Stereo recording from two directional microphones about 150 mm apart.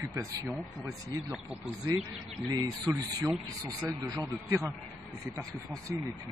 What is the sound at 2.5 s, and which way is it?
A man's voice, 25° right (ahead or behind).